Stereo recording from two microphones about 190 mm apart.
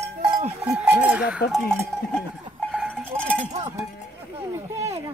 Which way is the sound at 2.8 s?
5° right (ahead or behind).